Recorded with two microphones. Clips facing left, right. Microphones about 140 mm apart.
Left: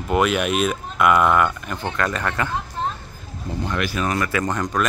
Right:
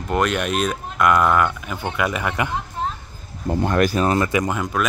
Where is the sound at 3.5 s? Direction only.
50° right (ahead or behind); by 4.4 s 25° right (ahead or behind).